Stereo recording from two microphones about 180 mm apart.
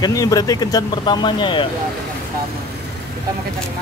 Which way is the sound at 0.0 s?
20° left (ahead or behind).